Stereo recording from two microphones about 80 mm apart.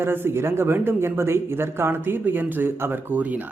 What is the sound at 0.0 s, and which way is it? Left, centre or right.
Speech, right.